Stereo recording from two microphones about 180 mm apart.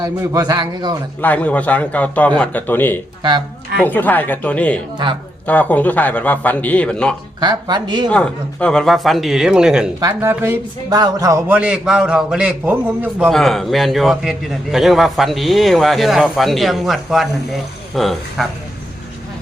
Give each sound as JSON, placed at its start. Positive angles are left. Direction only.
{"t": 0.0, "sound": "a man's voice", "side_deg": -20}
{"t": 1.2, "sound": "a man's voice", "side_deg": 10}
{"t": 5.0, "sound": "a man's voice", "side_deg": -25}
{"t": 5.5, "sound": "a man's voice", "side_deg": 10}
{"t": 7.3, "sound": "a man's voice", "side_deg": -25}
{"t": 8.1, "sound": "a man's voice", "side_deg": 5}
{"t": 10.0, "sound": "a man's voice", "side_deg": -20}